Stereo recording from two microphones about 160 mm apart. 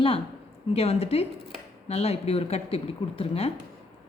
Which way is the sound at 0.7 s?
40° left (ahead or behind).